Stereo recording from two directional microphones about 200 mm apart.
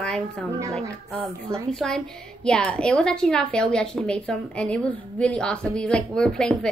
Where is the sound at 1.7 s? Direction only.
5° left (ahead or behind).